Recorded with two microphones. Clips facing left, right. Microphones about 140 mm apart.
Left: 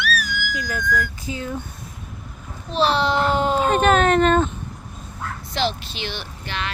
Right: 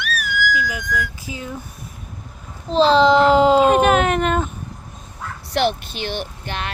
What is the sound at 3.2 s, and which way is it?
Speech, 90° right.